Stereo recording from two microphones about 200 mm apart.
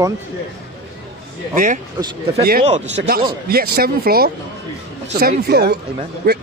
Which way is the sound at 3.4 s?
50° right (ahead or behind).